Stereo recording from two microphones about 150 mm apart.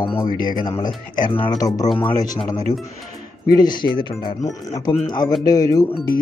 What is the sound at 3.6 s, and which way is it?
Speech, 30° left (ahead or behind).